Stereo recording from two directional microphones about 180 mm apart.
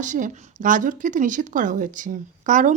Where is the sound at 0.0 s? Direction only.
45° right (ahead or behind).